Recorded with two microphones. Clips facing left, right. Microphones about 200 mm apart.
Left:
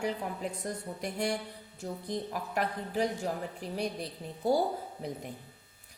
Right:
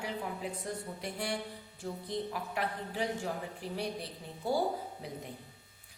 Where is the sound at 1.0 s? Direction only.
45° left (ahead or behind).